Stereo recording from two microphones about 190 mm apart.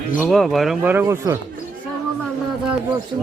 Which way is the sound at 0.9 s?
15° right (ahead or behind).